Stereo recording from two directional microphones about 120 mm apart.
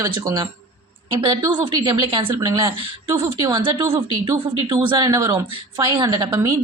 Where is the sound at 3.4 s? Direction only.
40° right (ahead or behind).